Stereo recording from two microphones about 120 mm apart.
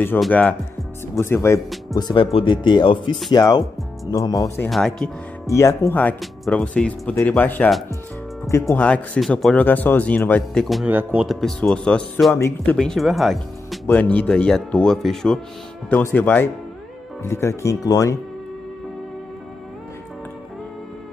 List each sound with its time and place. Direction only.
0.3 s speech: 10° left (ahead or behind)
2.0 s speech: 35° left (ahead or behind)
4.6 s speech: centre (ahead or behind)
5.5 s speech: 25° left (ahead or behind)
6.5 s speech: 10° left (ahead or behind)
8.8 s speech: 10° left (ahead or behind)
10.9 s speech: 15° right (ahead or behind)
11.2 s speech: 5° left (ahead or behind)
12.4 s speech: 25° left (ahead or behind)
12.7 s speech: 5° left (ahead or behind)
13.8 s speech: 10° left (ahead or behind)
15.9 s speech: 15° left (ahead or behind)